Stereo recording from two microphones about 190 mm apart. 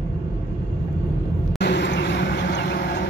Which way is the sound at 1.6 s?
65° left (ahead or behind).